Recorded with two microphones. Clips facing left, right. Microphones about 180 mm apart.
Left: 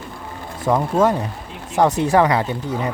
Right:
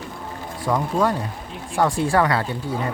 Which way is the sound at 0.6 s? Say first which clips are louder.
Left 4 dB; 20° left (ahead or behind).